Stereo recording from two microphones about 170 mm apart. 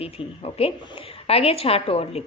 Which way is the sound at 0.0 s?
35° left (ahead or behind).